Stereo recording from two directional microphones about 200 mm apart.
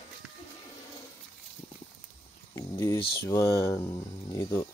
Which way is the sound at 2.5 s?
15° left (ahead or behind).